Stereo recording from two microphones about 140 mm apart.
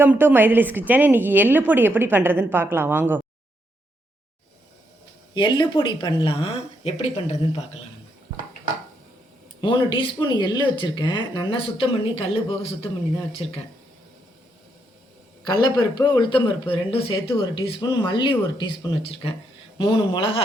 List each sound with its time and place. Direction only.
0.0 s a woman's voice: 15° right (ahead or behind)
5.3 s speech: 35° left (ahead or behind)
9.6 s speech: 35° left (ahead or behind)
15.4 s speech: 30° left (ahead or behind)